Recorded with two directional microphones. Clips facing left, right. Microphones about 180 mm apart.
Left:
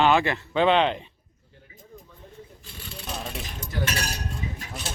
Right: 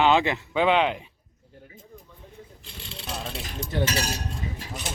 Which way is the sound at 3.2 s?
Centre (ahead or behind).